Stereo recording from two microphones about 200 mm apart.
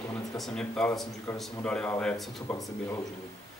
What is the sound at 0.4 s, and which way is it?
Speech, 5° left (ahead or behind).